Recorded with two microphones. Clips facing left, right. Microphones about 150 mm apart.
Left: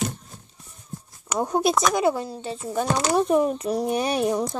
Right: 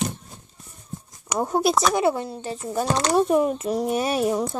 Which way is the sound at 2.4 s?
5° right (ahead or behind).